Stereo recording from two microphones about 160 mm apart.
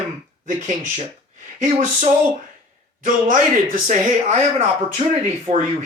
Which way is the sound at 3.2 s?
55° right (ahead or behind).